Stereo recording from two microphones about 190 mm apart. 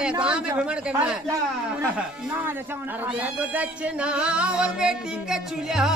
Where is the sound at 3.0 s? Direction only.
5° right (ahead or behind).